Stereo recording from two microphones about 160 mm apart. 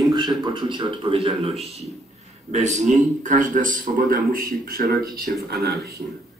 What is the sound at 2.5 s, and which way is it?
Speech, 50° right (ahead or behind).